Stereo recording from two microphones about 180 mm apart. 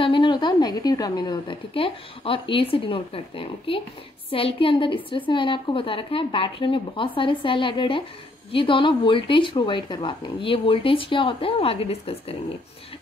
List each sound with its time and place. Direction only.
0.0 s speech: 25° left (ahead or behind)